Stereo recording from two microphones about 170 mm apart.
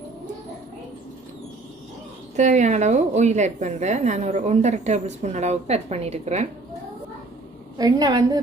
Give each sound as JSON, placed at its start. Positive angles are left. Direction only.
{"t": 2.3, "sound": "a woman's voice", "side_deg": -45}
{"t": 7.8, "sound": "a woman's voice", "side_deg": -20}